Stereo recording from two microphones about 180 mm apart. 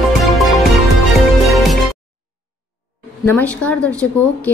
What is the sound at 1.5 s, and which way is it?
Music, centre (ahead or behind).